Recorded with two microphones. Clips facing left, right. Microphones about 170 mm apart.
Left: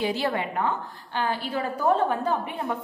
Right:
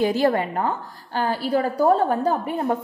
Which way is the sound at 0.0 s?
45° right (ahead or behind).